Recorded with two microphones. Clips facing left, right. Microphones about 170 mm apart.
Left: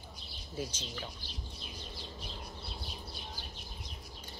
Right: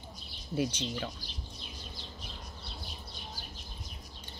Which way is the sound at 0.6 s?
70° right (ahead or behind).